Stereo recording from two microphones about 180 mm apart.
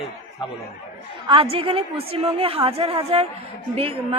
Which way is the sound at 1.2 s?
30° right (ahead or behind).